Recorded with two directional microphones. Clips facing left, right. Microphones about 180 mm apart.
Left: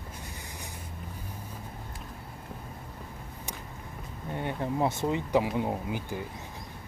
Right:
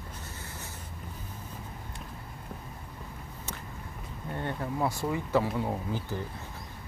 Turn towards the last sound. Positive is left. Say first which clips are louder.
# even
turn(degrees=15)  # may be behind; listen again after turning